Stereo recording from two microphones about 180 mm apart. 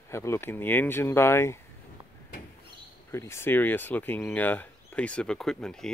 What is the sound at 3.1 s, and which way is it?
Speech, 15° left (ahead or behind).